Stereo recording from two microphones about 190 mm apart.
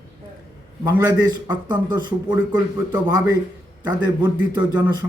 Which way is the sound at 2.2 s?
10° right (ahead or behind).